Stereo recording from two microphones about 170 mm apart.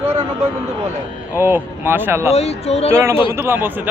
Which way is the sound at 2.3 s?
40° left (ahead or behind).